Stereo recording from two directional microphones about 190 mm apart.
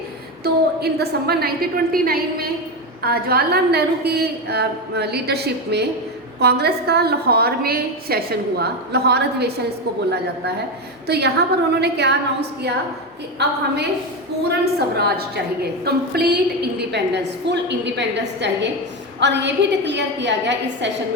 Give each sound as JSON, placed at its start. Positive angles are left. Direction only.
{"t": 0.4, "sound": "a woman's voice", "side_deg": -55}
{"t": 11.0, "sound": "a woman's voice", "side_deg": -60}
{"t": 14.6, "sound": "a woman's voice", "side_deg": -55}